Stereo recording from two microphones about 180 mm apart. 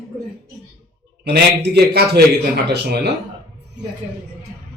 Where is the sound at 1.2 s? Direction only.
65° right (ahead or behind).